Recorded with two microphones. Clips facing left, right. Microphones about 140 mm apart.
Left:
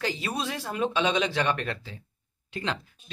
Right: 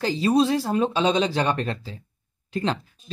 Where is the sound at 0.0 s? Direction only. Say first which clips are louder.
Right 11 dB; 30° right (ahead or behind).